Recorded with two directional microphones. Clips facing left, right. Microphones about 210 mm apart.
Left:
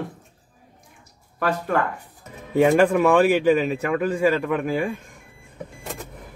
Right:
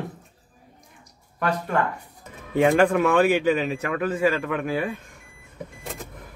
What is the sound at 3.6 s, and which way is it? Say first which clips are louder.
Speech: left 3 dB; 40° left (ahead or behind).